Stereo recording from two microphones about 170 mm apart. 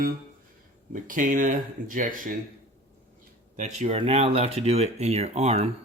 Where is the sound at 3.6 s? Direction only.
45° right (ahead or behind).